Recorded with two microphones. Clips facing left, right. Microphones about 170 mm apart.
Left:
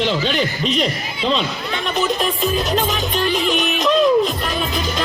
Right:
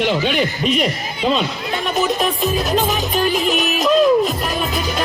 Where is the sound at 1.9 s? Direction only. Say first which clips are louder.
Right 1 dB; centre (ahead or behind).